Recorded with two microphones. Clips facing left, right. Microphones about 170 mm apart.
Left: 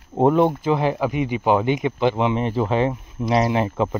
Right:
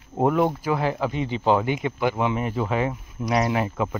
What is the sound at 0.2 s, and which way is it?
Speech, 25° left (ahead or behind).